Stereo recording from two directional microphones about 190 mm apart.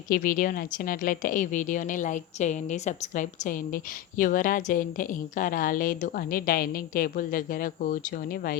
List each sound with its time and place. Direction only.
0.1 s a woman's voice: 45° left (ahead or behind)